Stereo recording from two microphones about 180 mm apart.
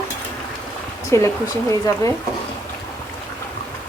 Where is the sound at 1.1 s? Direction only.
15° left (ahead or behind).